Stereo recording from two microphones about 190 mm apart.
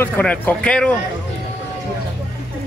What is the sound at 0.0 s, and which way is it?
Speech, 5° left (ahead or behind).